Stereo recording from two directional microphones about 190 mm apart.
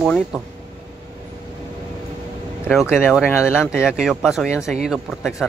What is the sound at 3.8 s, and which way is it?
Speech, 5° right (ahead or behind).